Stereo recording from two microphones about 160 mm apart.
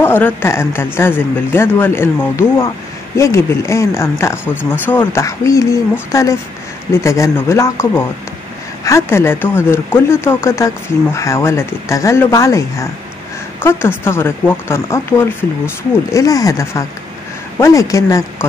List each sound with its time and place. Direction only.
0.0 s speech: 15° left (ahead or behind)